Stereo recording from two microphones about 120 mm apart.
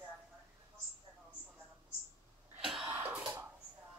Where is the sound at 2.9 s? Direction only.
15° right (ahead or behind).